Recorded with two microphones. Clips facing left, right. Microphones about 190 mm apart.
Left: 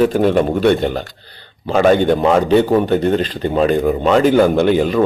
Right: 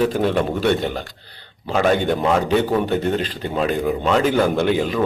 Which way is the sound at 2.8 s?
10° right (ahead or behind).